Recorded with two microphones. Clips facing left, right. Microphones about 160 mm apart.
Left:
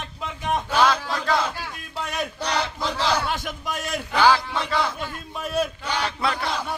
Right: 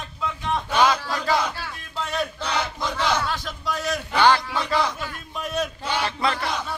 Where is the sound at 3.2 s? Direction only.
20° left (ahead or behind).